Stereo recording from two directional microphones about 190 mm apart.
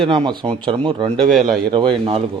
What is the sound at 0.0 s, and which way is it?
Speech, 25° right (ahead or behind).